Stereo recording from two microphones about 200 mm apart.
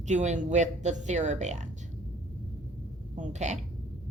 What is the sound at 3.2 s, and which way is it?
Speech, 35° right (ahead or behind).